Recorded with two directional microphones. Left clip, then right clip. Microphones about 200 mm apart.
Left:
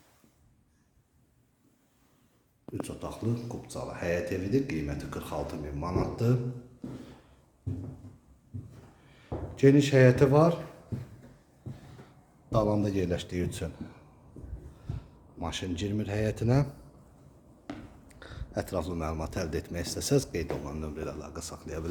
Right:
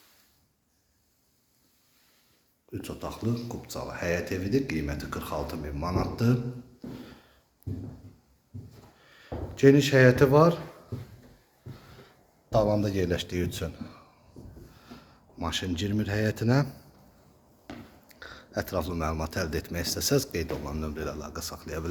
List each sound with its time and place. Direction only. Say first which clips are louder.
2.8 s speech: right 2 dB; centre (ahead or behind)
9.0 s speech: right 1 dB; centre (ahead or behind)
12.5 s speech: right 3 dB; centre (ahead or behind)
17.7 s a sound: left 1 dB; 25° left (ahead or behind)
18.1 s speech: right 2 dB; 10° left (ahead or behind)